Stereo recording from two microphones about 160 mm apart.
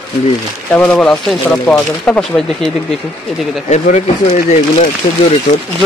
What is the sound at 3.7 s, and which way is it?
Speech, 45° left (ahead or behind).